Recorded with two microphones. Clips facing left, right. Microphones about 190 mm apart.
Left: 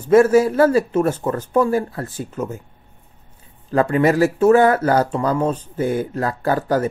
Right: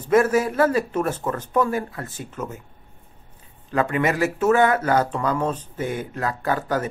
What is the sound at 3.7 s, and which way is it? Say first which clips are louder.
Speech: left 5 dB; 35° left (ahead or behind).